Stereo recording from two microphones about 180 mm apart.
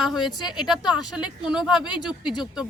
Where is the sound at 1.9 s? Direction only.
25° left (ahead or behind).